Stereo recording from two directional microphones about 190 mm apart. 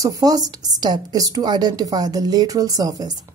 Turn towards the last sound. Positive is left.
turn(degrees=-20)  # may be behind; listen again after turning